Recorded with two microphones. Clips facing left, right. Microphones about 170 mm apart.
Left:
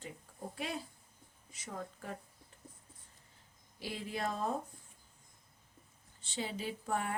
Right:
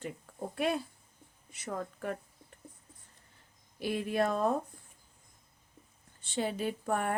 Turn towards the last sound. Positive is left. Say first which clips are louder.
# right 5 dB
turn(degrees=-55)  # may be behind; listen again after turning